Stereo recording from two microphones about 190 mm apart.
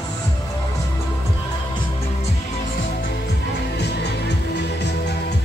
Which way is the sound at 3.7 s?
60° left (ahead or behind).